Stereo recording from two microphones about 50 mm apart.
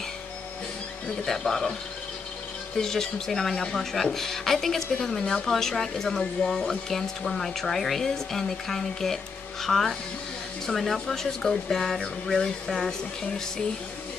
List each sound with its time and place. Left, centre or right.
1.2 s speech: centre
2.8 s speech: centre